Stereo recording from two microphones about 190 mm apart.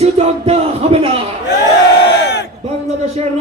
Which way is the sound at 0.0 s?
30° right (ahead or behind).